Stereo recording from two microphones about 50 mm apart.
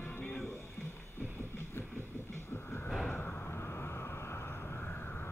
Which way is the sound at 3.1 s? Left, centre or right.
Left.